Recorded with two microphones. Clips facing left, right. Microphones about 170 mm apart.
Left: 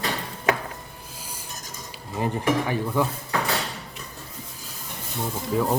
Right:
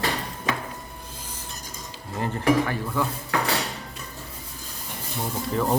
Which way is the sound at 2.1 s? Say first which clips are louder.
Right 2 dB; 15° left (ahead or behind).